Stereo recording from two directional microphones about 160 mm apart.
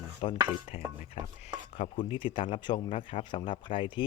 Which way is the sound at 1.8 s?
35° left (ahead or behind).